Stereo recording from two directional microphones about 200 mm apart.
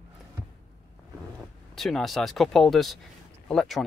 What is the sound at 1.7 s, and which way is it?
Speech, centre (ahead or behind).